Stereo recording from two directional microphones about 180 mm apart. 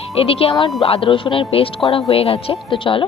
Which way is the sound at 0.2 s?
30° left (ahead or behind).